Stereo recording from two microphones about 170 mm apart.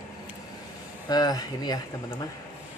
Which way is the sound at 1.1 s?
25° left (ahead or behind).